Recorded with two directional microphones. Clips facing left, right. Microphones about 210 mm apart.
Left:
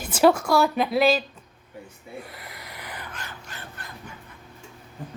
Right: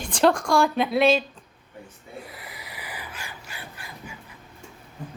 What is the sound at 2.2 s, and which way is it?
Crow, centre (ahead or behind).